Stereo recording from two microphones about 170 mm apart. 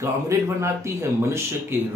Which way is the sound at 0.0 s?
15° right (ahead or behind).